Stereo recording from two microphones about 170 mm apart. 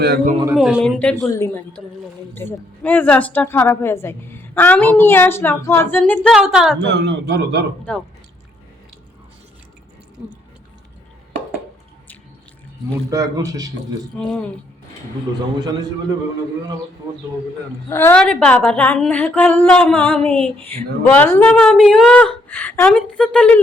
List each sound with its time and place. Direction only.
0.5 s a woman's voice: 5° right (ahead or behind)
1.3 s a woman's voice: 15° left (ahead or behind); by 6.7 s centre (ahead or behind)
6.7 s a man's voice: 90° right
7.9 s a woman's voice: 5° left (ahead or behind)
13.1 s a man's voice: 20° right (ahead or behind)
14.2 s a woman's voice: 5° left (ahead or behind)
17.8 s a woman's voice: 15° left (ahead or behind)